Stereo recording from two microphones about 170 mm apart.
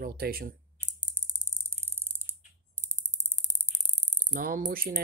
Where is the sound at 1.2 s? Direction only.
55° left (ahead or behind).